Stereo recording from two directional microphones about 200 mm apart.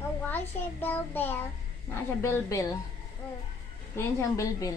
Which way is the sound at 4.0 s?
15° left (ahead or behind).